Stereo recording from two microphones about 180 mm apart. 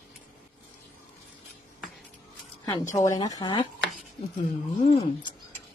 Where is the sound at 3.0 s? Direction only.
20° left (ahead or behind).